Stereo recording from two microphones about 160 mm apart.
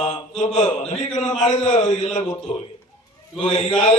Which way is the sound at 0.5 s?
50° left (ahead or behind).